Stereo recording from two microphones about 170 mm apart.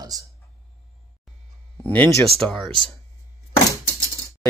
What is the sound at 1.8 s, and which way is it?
Speech, 10° left (ahead or behind).